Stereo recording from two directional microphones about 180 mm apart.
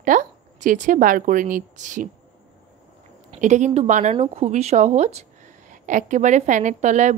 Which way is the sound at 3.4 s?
40° right (ahead or behind).